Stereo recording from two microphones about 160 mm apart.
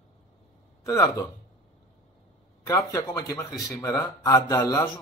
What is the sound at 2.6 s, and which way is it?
Speech, 20° left (ahead or behind).